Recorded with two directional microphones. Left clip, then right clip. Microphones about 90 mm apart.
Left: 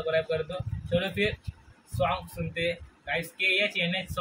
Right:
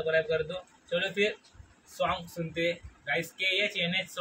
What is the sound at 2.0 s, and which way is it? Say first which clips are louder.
Speech: left 2 dB; 25° right (ahead or behind).